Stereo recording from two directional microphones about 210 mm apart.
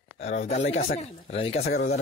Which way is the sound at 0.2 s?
35° left (ahead or behind).